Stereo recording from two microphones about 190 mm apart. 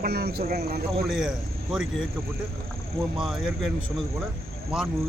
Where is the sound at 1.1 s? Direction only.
5° right (ahead or behind).